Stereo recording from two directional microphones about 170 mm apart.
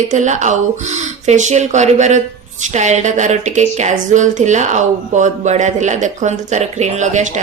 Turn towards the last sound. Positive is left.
turn(degrees=-45)  # may be behind; listen again after turning